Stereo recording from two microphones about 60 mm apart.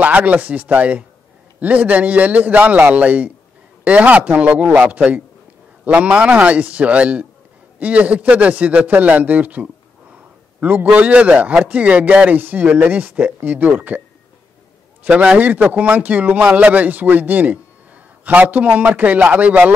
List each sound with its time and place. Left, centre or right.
0.0 s a man's voice: right
15.0 s a man's voice: right